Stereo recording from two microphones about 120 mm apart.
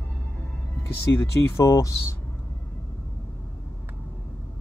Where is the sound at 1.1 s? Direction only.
25° left (ahead or behind).